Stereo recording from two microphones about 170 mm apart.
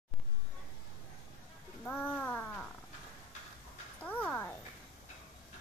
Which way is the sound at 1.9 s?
5° left (ahead or behind).